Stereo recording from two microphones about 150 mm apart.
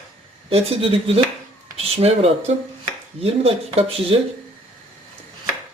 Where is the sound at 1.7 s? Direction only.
40° right (ahead or behind).